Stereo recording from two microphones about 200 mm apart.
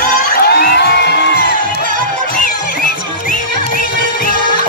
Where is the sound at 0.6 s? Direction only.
55° left (ahead or behind).